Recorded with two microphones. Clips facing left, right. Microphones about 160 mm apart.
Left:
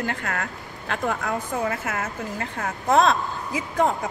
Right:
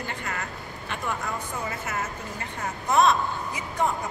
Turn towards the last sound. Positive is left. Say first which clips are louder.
# left 4 dB
turn(degrees=90)